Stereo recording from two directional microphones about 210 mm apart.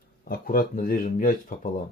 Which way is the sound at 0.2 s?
45° left (ahead or behind).